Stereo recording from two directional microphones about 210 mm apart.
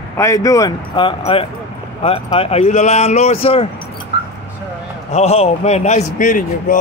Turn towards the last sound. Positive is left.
turn(degrees=40)  # may be behind; listen again after turning